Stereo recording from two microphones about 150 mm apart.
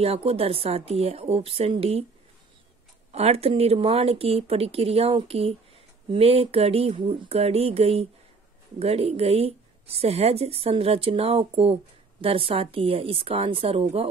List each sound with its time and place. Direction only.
0.0 s speech: 40° right (ahead or behind)
3.1 s speech: 45° right (ahead or behind)